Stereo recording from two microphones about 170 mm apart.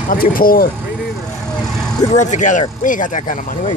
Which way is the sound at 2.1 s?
45° left (ahead or behind).